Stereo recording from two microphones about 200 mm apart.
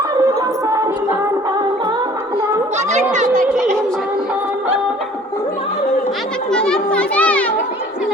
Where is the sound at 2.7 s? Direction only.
35° right (ahead or behind).